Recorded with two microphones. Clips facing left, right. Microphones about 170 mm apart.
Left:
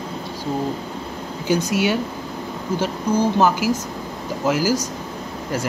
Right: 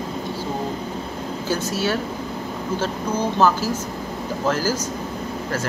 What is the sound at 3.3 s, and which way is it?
Speech, 10° left (ahead or behind).